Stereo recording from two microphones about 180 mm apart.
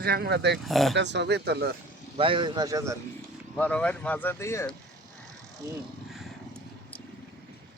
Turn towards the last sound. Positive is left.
turn(degrees=5)  # may be behind; listen again after turning